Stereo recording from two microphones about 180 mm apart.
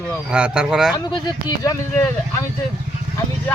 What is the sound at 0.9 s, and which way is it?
Speech, 25° left (ahead or behind).